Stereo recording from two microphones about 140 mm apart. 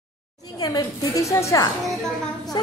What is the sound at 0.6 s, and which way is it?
A woman's voice, 30° left (ahead or behind).